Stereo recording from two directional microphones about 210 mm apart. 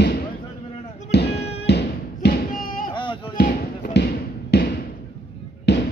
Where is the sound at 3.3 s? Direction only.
45° left (ahead or behind).